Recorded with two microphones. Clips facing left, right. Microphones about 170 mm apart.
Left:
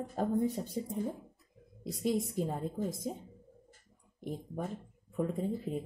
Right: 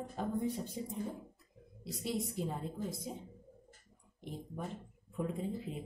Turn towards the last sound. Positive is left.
turn(degrees=45)  # may be behind; listen again after turning